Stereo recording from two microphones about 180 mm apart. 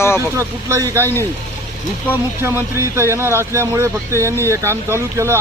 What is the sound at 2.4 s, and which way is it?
Speech, 15° right (ahead or behind).